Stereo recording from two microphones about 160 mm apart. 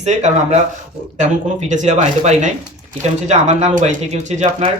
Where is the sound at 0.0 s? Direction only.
45° right (ahead or behind).